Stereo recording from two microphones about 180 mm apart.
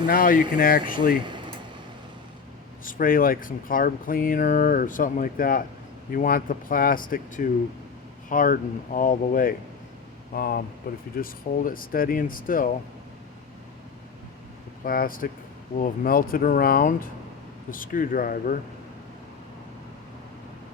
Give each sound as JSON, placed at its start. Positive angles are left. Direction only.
{"t": 0.1, "sound": "speech", "side_deg": 50}
{"t": 1.2, "sound": "a sound", "side_deg": -25}
{"t": 2.8, "sound": "speech", "side_deg": 50}
{"t": 14.8, "sound": "speech", "side_deg": 50}